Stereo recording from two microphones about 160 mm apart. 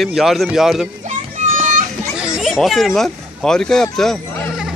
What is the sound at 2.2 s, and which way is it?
Speech, 5° right (ahead or behind).